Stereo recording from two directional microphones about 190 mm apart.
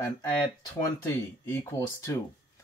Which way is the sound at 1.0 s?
15° left (ahead or behind).